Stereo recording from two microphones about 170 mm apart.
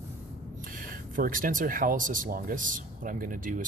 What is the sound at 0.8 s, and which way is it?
Speech, 55° right (ahead or behind).